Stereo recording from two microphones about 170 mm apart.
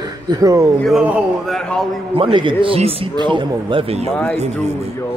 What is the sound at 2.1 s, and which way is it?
A man's voice, 30° right (ahead or behind).